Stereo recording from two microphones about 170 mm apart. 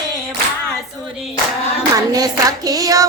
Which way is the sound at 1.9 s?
20° right (ahead or behind).